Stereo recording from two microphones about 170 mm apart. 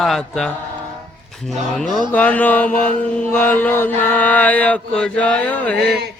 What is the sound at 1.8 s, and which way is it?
Speech, centre (ahead or behind).